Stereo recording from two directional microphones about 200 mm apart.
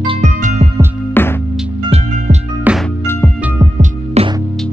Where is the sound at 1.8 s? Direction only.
30° right (ahead or behind).